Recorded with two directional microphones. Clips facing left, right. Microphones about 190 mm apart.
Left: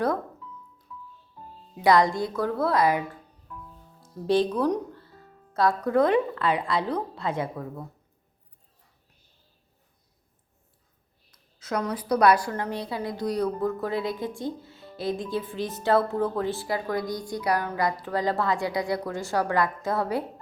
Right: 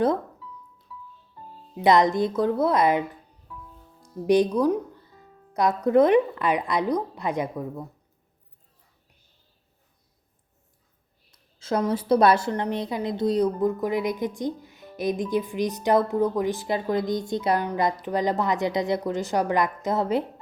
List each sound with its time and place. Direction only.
0.9 s music: 5° right (ahead or behind)
1.7 s a woman's voice: 20° right (ahead or behind)
4.3 s speech: 15° right (ahead or behind)
11.3 s a woman's voice: 25° right (ahead or behind)